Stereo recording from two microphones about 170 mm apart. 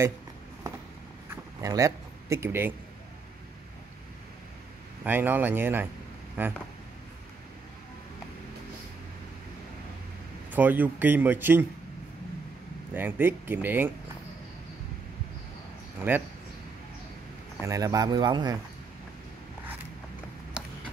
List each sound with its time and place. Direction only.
1.3 s a sound: 20° right (ahead or behind)
5.0 s speech: 10° right (ahead or behind)
10.5 s speech: 10° right (ahead or behind)
12.9 s speech: 10° right (ahead or behind)
16.1 s speech: 10° right (ahead or behind)
17.6 s speech: 20° right (ahead or behind)